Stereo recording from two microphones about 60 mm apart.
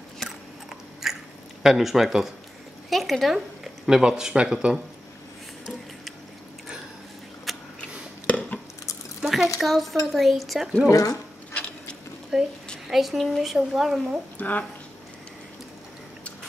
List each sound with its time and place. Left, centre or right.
1.0 s chewing: centre
1.6 s speech: centre
7.5 s a sound: centre
8.3 s a sound: left
9.2 s a sound: centre
9.6 s speech: centre
10.9 s speech: left
12.3 s speech: centre
14.4 s a woman's voice: left